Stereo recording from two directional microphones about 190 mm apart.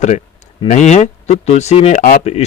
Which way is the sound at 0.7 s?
35° left (ahead or behind).